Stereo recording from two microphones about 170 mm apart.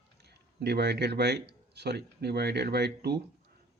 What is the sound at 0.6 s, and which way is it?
Speech, 70° right (ahead or behind).